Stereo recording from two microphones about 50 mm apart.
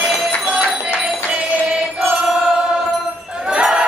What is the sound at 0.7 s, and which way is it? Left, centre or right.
Music, centre.